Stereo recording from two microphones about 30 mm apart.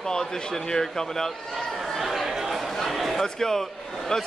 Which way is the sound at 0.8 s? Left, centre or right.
Centre.